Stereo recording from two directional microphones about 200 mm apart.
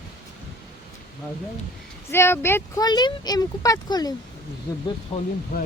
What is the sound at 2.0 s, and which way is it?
Speech, 10° left (ahead or behind).